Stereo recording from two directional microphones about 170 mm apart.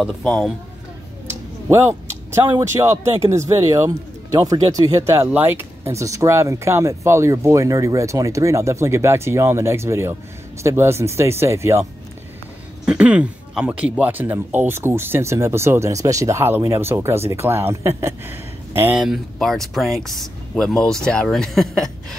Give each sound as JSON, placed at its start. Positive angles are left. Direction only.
{"t": 1.2, "sound": "a sound", "side_deg": -15}
{"t": 2.6, "sound": "speech", "side_deg": -15}
{"t": 12.8, "sound": "speech", "side_deg": -5}